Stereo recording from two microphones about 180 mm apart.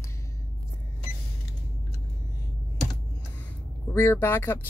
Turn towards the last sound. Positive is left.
turn(degrees=10)  # may be behind; listen again after turning